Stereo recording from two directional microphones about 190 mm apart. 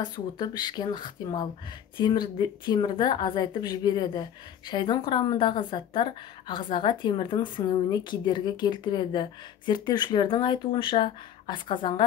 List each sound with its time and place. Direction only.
0.0 s a woman's voice: 25° left (ahead or behind)